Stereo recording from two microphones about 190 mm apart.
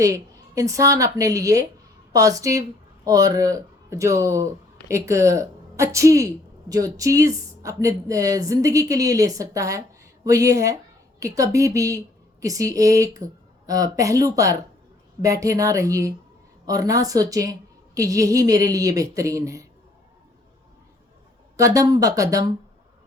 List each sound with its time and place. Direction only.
0.0 s a woman's voice: 15° right (ahead or behind)
21.5 s a woman's voice: 15° right (ahead or behind)